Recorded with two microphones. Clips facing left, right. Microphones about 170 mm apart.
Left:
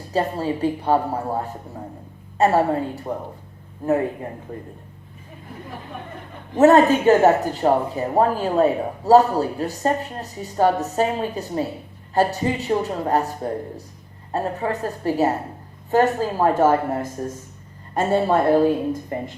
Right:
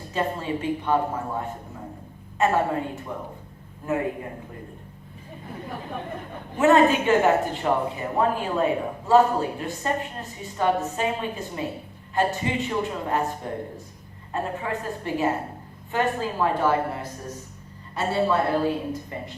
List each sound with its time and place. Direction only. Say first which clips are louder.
0.1 s a woman's voice: left 4 dB; 35° left (ahead or behind)
6.6 s a woman's voice: left 4 dB; 40° left (ahead or behind)
14.3 s a woman's voice: left 4 dB; 40° left (ahead or behind)